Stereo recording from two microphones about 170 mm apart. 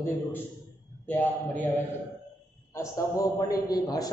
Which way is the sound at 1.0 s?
10° left (ahead or behind).